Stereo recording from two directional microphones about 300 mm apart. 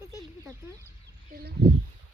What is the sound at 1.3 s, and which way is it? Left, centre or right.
Speech, right.